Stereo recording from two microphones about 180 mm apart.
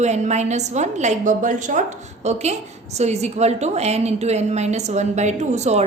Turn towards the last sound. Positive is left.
turn(degrees=-40)  # may be behind; listen again after turning